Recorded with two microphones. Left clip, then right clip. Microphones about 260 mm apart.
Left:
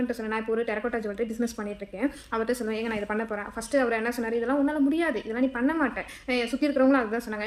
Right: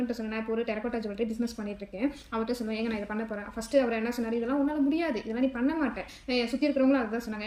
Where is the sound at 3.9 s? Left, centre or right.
Left.